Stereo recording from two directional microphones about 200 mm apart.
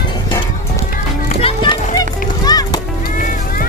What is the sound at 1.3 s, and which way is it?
Music, 30° left (ahead or behind).